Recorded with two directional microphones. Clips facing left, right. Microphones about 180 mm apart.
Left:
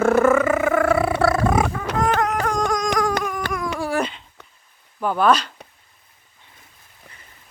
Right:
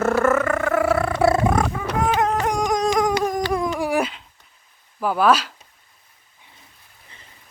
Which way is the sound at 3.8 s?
15° right (ahead or behind).